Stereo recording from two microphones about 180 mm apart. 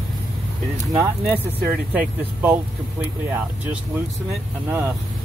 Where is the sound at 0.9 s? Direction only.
15° right (ahead or behind).